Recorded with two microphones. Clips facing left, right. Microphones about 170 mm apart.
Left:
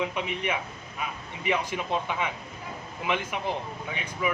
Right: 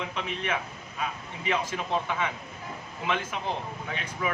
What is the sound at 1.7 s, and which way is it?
Speech, 15° left (ahead or behind).